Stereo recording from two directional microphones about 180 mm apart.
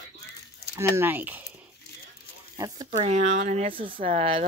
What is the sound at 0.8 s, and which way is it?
Speech, 10° right (ahead or behind).